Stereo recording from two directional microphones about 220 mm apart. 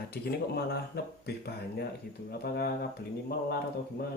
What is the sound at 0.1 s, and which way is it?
Speech, 45° left (ahead or behind).